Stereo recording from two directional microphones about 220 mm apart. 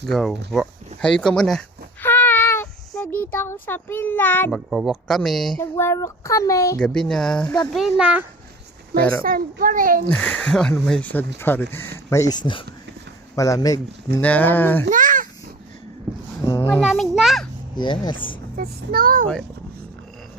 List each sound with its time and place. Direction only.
0.0 s speech: centre (ahead or behind)
5.7 s speech: 10° left (ahead or behind)
6.8 s speech: 5° left (ahead or behind)
9.0 s speech: 5° left (ahead or behind)
9.2 s a child's voice: 40° right (ahead or behind)
10.1 s speech: 5° left (ahead or behind)
14.2 s speech: 5° left (ahead or behind)
14.8 s babbling: 35° right (ahead or behind)
16.5 s speech: 10° left (ahead or behind)
17.7 s speech: 20° left (ahead or behind)
18.5 s a child's voice: 40° right (ahead or behind)